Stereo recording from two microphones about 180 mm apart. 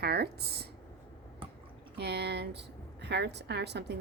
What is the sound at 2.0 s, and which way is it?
A woman's voice, 70° right (ahead or behind).